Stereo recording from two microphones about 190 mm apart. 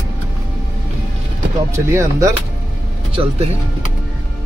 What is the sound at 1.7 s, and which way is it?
Speech, 15° right (ahead or behind).